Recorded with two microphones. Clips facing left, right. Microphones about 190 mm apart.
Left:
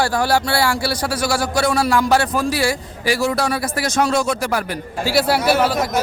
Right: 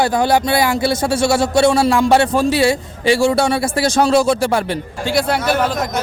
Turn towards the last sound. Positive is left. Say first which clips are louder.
# left 1 dB
turn(degrees=10)  # may be behind; listen again after turning